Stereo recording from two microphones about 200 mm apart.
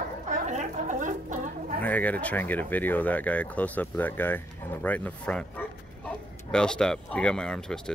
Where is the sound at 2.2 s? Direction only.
10° left (ahead or behind).